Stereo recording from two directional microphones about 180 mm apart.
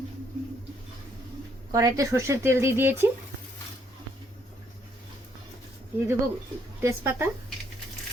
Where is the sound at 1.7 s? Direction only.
20° right (ahead or behind).